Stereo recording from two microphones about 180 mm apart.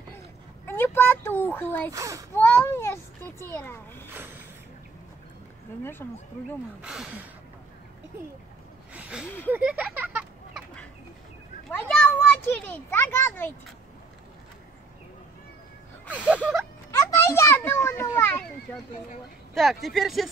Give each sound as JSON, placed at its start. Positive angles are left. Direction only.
{"t": 0.7, "sound": "a sound", "side_deg": 10}
{"t": 1.9, "sound": "a child's voice", "side_deg": -20}
{"t": 2.3, "sound": "a child's voice", "side_deg": 10}
{"t": 4.1, "sound": "speech", "side_deg": -10}
{"t": 6.0, "sound": "speech", "side_deg": 15}
{"t": 6.8, "sound": "speech", "side_deg": -5}
{"t": 8.9, "sound": "speech", "side_deg": -5}
{"t": 9.5, "sound": "a sound", "side_deg": -10}
{"t": 11.6, "sound": "a child's voice", "side_deg": 5}
{"t": 16.1, "sound": "music", "side_deg": -5}
{"t": 16.9, "sound": "children playing", "side_deg": 15}
{"t": 19.5, "sound": "speech", "side_deg": 0}